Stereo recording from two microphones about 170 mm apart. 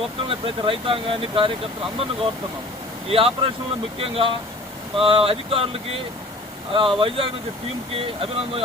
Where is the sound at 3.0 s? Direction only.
35° right (ahead or behind).